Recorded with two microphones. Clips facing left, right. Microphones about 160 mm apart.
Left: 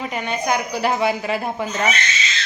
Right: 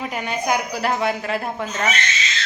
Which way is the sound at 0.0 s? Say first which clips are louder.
Left 1 dB; 5° right (ahead or behind).